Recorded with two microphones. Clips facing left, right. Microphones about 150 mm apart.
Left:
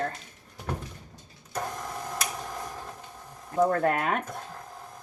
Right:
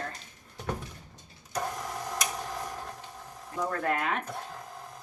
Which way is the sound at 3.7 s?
40° left (ahead or behind).